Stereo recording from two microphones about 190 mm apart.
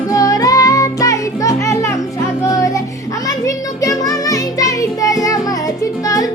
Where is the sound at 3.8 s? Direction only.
20° left (ahead or behind).